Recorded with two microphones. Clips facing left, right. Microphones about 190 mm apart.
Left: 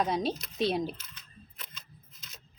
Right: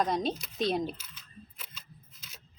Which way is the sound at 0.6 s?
Centre (ahead or behind).